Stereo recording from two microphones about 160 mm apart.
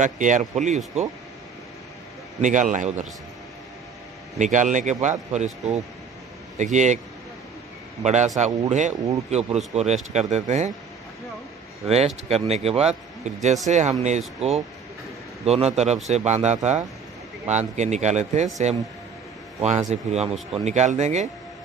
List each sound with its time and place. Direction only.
0.0 s speech: 50° right (ahead or behind)
2.4 s speech: 50° right (ahead or behind)
4.4 s speech: 50° right (ahead or behind)
8.0 s speech: 45° right (ahead or behind)
12.3 s speech: 40° right (ahead or behind)
19.9 s speech: 40° right (ahead or behind)